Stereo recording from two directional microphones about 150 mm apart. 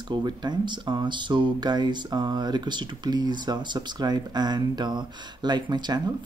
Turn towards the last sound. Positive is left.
turn(degrees=-30)  # may be behind; listen again after turning